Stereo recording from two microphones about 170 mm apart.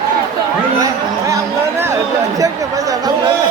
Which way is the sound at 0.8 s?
20° right (ahead or behind).